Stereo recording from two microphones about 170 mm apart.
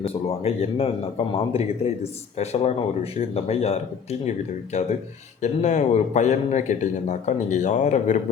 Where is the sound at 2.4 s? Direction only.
40° left (ahead or behind).